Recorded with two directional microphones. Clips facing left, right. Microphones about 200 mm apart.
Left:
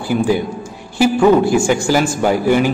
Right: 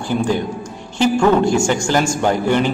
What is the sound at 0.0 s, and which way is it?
A woman's voice, 5° left (ahead or behind).